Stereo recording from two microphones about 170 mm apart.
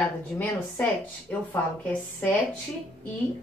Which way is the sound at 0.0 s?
10° left (ahead or behind).